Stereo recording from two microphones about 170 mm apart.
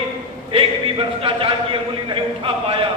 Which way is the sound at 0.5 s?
30° right (ahead or behind).